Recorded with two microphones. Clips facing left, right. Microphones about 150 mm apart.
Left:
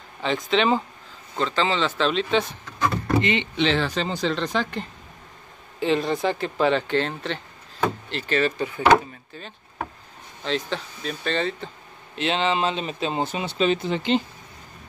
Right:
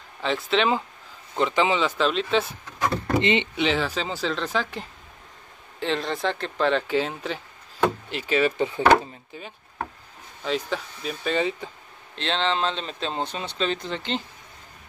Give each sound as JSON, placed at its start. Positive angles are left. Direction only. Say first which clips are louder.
{"t": 0.5, "sound": "speech", "louder": "left 2 dB", "side_deg": 0}
{"t": 1.3, "sound": "speech", "louder": "right 2 dB", "side_deg": -15}
{"t": 3.2, "sound": "speech", "louder": "right 1 dB", "side_deg": -20}
{"t": 3.5, "sound": "speech", "louder": "left 2 dB", "side_deg": -5}
{"t": 8.5, "sound": "speech", "louder": "right 3 dB", "side_deg": -25}
{"t": 9.3, "sound": "speech", "louder": "even", "side_deg": -15}
{"t": 12.2, "sound": "speech", "louder": "left 2 dB", "side_deg": 10}